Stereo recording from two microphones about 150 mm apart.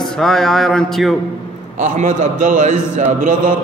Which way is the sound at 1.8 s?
60° right (ahead or behind).